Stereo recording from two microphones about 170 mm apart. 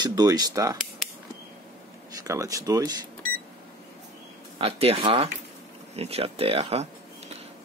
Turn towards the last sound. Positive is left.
turn(degrees=-35)  # may be behind; listen again after turning